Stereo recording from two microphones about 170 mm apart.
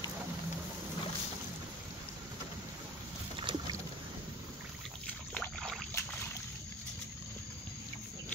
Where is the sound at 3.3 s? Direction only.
30° right (ahead or behind).